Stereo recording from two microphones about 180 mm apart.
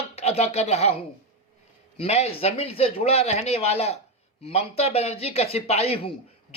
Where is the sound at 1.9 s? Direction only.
35° left (ahead or behind).